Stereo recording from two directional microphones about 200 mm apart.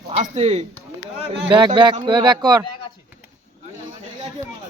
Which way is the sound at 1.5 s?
25° right (ahead or behind).